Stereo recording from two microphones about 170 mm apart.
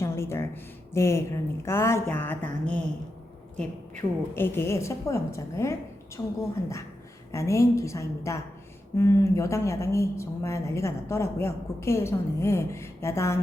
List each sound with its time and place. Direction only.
0.0 s a sound: 15° left (ahead or behind)
0.9 s a woman's voice: 15° left (ahead or behind)
4.4 s a woman's voice: 15° left (ahead or behind)